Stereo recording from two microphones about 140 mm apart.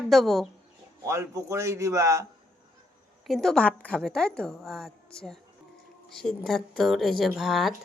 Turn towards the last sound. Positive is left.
turn(degrees=0)  # may be behind; listen again after turning